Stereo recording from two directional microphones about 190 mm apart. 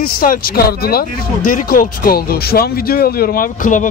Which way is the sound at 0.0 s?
50° left (ahead or behind).